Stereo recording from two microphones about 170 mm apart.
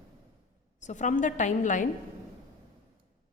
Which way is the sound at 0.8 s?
45° left (ahead or behind).